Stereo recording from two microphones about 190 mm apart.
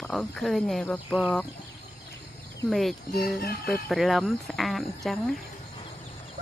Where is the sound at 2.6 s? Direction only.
Centre (ahead or behind).